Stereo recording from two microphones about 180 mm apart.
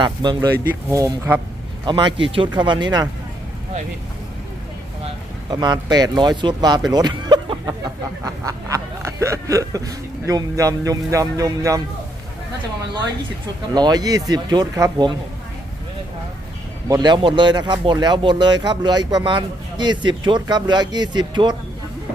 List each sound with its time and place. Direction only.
0.0 s speech: 25° right (ahead or behind)
5.5 s speech: 25° right (ahead or behind)
8.2 s snicker: 20° right (ahead or behind)
13.7 s speech: 20° right (ahead or behind)
16.9 s speech: 25° right (ahead or behind)